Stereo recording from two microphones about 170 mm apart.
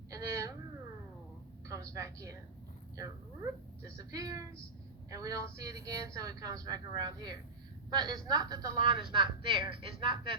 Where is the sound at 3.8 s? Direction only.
20° right (ahead or behind).